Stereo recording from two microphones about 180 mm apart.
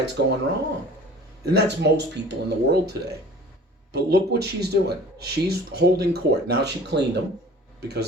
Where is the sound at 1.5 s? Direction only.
65° right (ahead or behind).